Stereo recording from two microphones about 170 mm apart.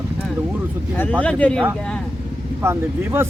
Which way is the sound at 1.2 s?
5° left (ahead or behind).